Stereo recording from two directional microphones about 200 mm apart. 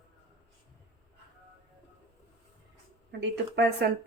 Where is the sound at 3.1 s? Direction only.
60° right (ahead or behind).